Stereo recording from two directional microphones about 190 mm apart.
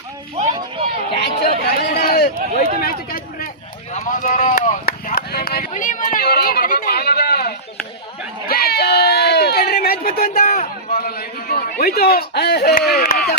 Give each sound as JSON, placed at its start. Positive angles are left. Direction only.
{"t": 1.2, "sound": "chatter", "side_deg": 55}
{"t": 2.8, "sound": "a sound", "side_deg": 50}
{"t": 12.9, "sound": "chop", "side_deg": 55}